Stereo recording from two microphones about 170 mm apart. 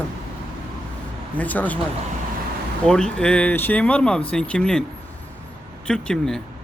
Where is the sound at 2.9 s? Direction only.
5° left (ahead or behind).